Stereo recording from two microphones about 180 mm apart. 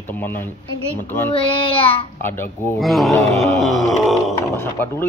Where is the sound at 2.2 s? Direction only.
10° left (ahead or behind).